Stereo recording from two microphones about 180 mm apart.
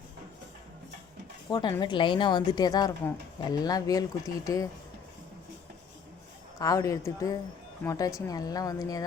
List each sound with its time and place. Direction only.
1.5 s speech: 25° left (ahead or behind)
6.6 s speech: 20° left (ahead or behind)